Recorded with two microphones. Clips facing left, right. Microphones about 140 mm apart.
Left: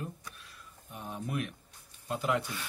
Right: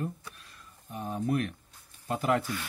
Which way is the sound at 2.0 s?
50° right (ahead or behind).